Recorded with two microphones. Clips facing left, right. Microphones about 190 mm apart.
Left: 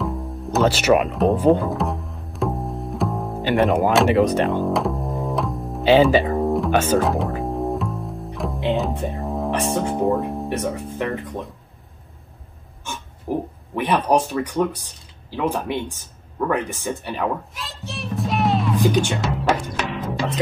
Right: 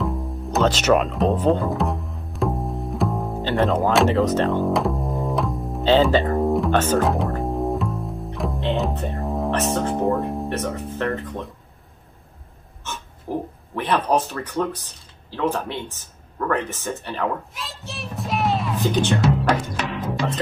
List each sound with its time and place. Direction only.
0.0 s music: centre (ahead or behind)
1.1 s speech: 5° left (ahead or behind)
1.6 s bowed string instrument: centre (ahead or behind)
3.4 s speech: 15° left (ahead or behind)
4.5 s music: centre (ahead or behind)
8.6 s speech: centre (ahead or behind)
9.5 s speech: 15° left (ahead or behind)
9.9 s speech: centre (ahead or behind)
10.5 s speech: 15° left (ahead or behind)
13.3 s pig: 10° left (ahead or behind)
13.7 s speech: 10° left (ahead or behind)
17.6 s music: centre (ahead or behind)
18.8 s speech: 10° left (ahead or behind)
19.5 s music: centre (ahead or behind)